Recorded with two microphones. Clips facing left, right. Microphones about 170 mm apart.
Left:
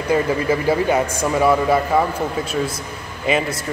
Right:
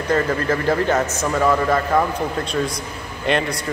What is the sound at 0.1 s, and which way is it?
A man's voice, 10° left (ahead or behind).